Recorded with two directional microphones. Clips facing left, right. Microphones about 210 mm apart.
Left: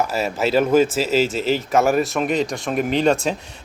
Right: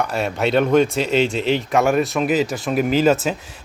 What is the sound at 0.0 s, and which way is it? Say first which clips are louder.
A man's voice: even; centre (ahead or behind).